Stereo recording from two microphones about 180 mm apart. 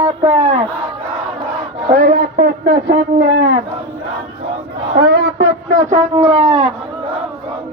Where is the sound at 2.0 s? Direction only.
50° right (ahead or behind).